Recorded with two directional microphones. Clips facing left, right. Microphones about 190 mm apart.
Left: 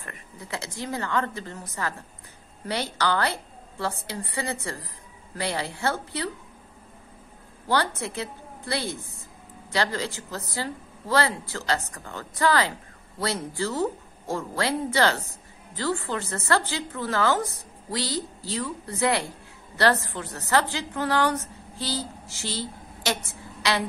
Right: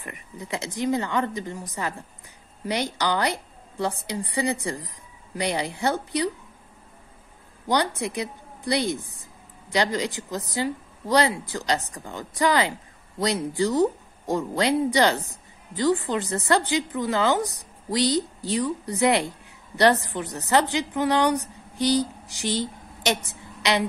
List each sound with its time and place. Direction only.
0.0 s speech: 15° right (ahead or behind)
7.6 s a woman's voice: 15° right (ahead or behind)